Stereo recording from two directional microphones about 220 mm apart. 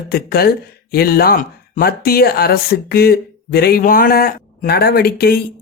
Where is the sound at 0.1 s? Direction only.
45° left (ahead or behind).